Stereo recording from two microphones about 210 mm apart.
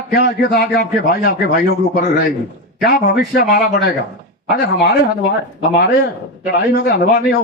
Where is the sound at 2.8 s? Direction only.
45° left (ahead or behind).